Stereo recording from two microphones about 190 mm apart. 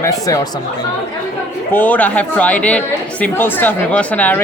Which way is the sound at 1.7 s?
10° left (ahead or behind).